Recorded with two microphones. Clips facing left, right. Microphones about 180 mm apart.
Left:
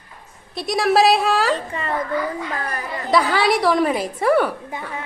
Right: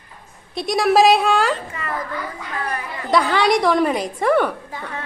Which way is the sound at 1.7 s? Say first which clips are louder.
Left 4 dB; 30° left (ahead or behind).